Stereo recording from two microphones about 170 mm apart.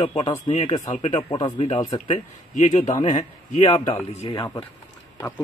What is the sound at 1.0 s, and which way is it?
Speech, 30° left (ahead or behind).